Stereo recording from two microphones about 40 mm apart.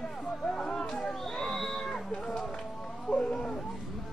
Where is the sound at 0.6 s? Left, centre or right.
Centre.